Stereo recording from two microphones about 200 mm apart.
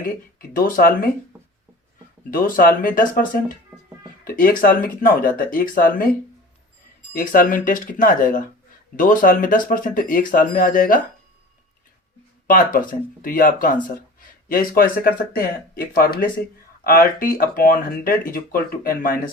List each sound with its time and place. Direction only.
0.3 s speech: 45° left (ahead or behind)
2.3 s speech: 45° left (ahead or behind)
7.1 s speech: 45° left (ahead or behind)
12.5 s speech: 45° left (ahead or behind)